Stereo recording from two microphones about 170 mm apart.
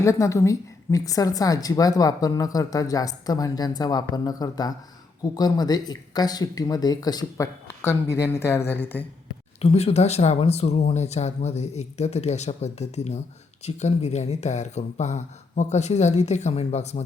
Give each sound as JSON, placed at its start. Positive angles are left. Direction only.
{"t": 0.0, "sound": "a woman's voice", "side_deg": 15}
{"t": 9.6, "sound": "speech", "side_deg": 40}